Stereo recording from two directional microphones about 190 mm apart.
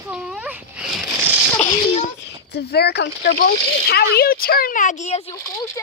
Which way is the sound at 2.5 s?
55° left (ahead or behind).